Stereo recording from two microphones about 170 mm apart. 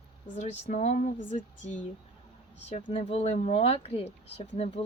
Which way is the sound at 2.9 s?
40° left (ahead or behind).